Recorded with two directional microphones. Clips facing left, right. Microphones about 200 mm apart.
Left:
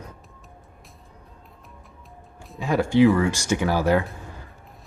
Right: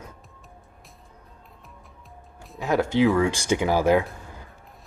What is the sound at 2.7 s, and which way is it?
Speech, 15° right (ahead or behind).